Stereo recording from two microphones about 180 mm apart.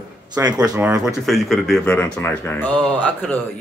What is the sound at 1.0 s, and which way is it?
A man's voice, centre (ahead or behind).